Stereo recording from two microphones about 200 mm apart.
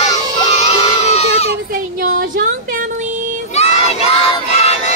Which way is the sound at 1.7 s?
45° right (ahead or behind).